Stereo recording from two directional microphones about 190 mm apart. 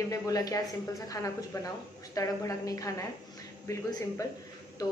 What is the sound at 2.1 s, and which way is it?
A woman's voice, 15° left (ahead or behind).